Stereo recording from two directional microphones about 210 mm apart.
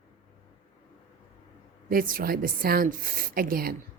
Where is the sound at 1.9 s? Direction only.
45° right (ahead or behind).